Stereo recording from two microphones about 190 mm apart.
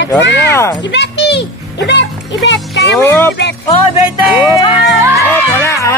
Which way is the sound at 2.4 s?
65° left (ahead or behind).